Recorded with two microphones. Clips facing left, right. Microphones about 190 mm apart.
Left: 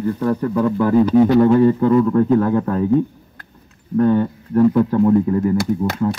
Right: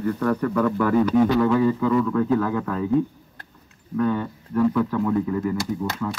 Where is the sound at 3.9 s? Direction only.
50° left (ahead or behind).